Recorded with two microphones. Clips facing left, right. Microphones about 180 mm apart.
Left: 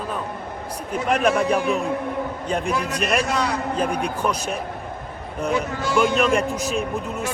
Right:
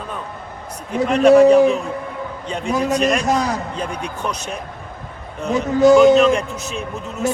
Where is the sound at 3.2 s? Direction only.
40° right (ahead or behind).